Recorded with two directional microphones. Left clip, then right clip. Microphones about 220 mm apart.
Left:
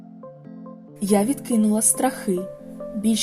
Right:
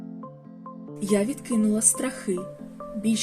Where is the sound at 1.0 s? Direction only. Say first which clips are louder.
Left 4 dB; 35° left (ahead or behind).